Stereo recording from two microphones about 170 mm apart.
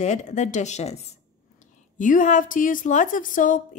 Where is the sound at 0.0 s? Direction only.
45° left (ahead or behind).